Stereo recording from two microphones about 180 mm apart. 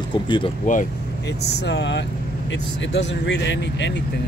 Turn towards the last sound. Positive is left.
turn(degrees=80)